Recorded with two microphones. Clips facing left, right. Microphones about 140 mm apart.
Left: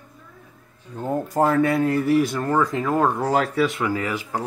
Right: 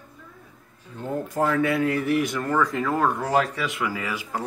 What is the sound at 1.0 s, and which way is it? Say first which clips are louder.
Speech: left 4 dB; 40° left (ahead or behind).